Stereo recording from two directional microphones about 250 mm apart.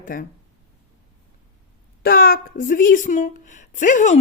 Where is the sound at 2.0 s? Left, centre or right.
Left.